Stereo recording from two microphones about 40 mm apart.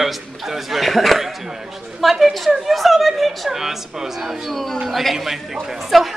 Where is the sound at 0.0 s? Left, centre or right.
Centre.